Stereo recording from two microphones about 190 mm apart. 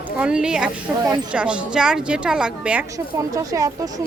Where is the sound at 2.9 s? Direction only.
15° right (ahead or behind).